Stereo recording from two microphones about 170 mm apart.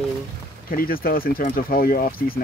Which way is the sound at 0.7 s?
60° left (ahead or behind).